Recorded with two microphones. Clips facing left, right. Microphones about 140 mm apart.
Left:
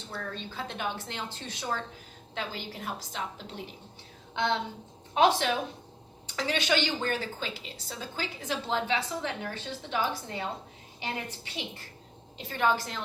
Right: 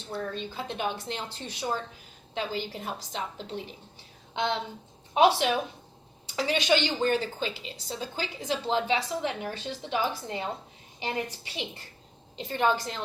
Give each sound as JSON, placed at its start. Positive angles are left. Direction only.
{"t": 0.1, "sound": "a woman's voice", "side_deg": -15}
{"t": 5.1, "sound": "a woman's voice", "side_deg": -15}